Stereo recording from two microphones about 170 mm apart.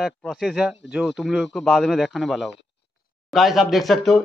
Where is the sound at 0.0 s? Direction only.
Centre (ahead or behind).